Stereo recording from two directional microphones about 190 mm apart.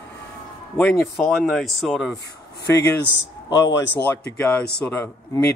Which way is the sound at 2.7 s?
10° left (ahead or behind).